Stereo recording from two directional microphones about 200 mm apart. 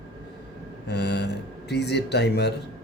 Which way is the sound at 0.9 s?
55° left (ahead or behind).